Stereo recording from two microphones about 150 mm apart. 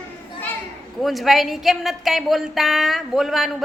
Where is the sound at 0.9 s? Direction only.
Centre (ahead or behind).